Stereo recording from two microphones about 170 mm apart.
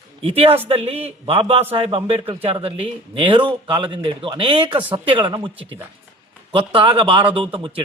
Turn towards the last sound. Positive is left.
turn(degrees=-30)  # may be behind; listen again after turning